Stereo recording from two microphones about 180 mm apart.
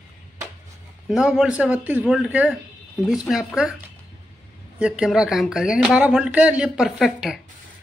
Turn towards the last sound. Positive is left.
turn(degrees=0)  # may be behind; listen again after turning